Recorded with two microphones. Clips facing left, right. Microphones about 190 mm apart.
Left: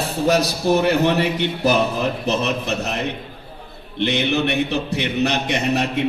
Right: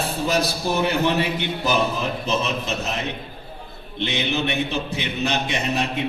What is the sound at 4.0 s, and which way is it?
A man's voice, 60° left (ahead or behind).